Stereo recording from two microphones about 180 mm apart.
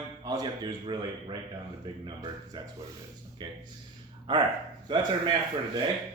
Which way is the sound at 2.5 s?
25° right (ahead or behind).